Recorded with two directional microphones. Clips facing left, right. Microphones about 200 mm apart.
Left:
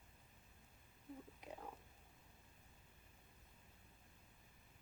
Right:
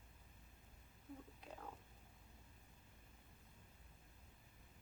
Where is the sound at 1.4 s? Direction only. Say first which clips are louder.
Left 5 dB; 15° left (ahead or behind).